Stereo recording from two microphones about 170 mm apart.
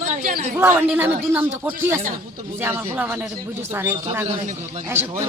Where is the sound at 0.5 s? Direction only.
10° right (ahead or behind).